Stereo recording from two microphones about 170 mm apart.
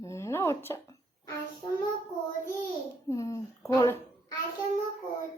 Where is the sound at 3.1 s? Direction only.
20° left (ahead or behind).